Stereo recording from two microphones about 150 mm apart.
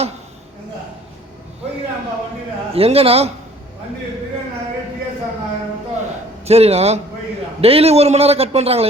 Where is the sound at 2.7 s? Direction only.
40° right (ahead or behind).